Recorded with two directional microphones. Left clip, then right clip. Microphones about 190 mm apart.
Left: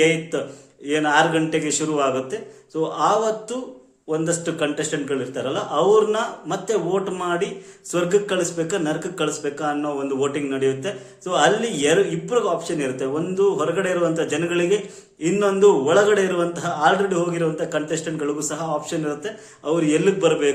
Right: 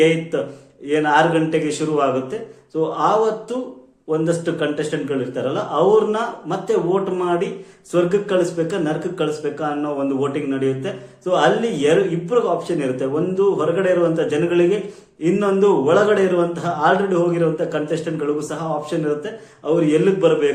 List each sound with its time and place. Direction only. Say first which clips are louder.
0.0 s speech: right 2 dB; 15° left (ahead or behind)